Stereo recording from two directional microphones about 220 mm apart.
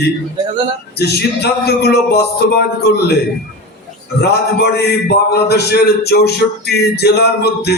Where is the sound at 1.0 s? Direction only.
45° left (ahead or behind).